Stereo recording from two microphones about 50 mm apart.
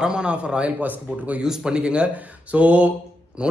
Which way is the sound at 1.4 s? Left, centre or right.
Centre.